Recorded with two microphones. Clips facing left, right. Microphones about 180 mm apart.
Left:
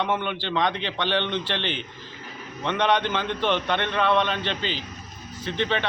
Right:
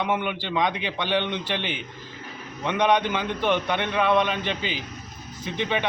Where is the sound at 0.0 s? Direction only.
10° right (ahead or behind).